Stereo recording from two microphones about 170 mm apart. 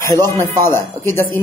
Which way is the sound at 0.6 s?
15° left (ahead or behind).